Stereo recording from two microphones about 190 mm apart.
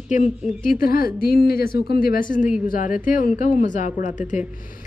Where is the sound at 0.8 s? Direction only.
50° left (ahead or behind).